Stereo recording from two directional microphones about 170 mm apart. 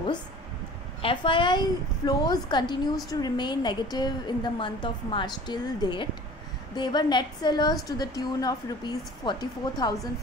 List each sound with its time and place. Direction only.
1.0 s a woman's voice: 30° left (ahead or behind)